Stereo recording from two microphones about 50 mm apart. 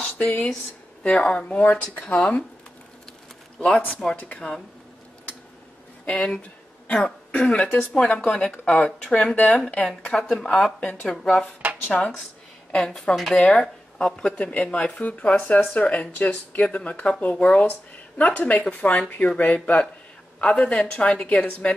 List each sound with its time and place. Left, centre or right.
0.0 s a sound: left
1.0 s speech: centre
1.6 s speech: left
2.1 s speech: centre
4.0 s speech: centre
4.4 s speech: left
6.0 s a woman's voice: left
9.1 s speech: left
10.0 s speech: centre
13.4 s speech: centre